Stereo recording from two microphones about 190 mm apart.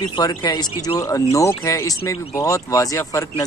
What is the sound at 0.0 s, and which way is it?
Speech, 20° left (ahead or behind).